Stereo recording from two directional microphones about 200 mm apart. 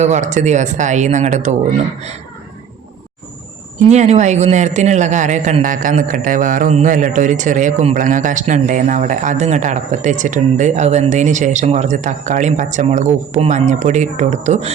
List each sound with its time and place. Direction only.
0.0 s a man's voice: 35° right (ahead or behind)
3.8 s a man's voice: 35° right (ahead or behind)